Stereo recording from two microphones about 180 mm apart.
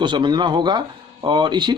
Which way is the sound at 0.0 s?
25° right (ahead or behind).